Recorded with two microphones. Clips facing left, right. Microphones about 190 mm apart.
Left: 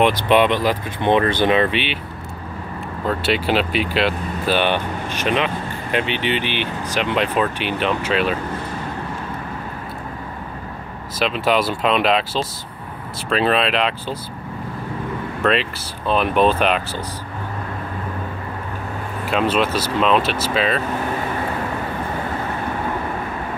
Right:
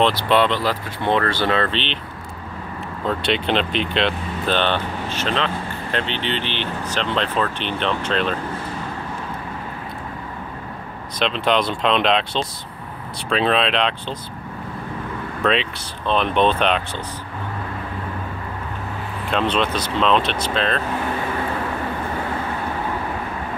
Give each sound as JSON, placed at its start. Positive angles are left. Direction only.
{"t": 0.0, "sound": "speech", "side_deg": 15}
{"t": 3.1, "sound": "speech", "side_deg": 5}
{"t": 11.1, "sound": "speech", "side_deg": 5}
{"t": 15.4, "sound": "speech", "side_deg": 0}
{"t": 19.2, "sound": "speech", "side_deg": 5}